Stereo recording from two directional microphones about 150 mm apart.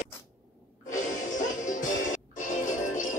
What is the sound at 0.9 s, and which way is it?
Music, 55° left (ahead or behind).